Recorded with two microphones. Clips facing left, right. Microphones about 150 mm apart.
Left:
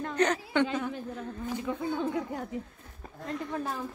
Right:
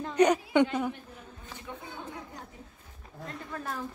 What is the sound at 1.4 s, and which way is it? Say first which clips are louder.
A woman's voice: left 11 dB; 90° left.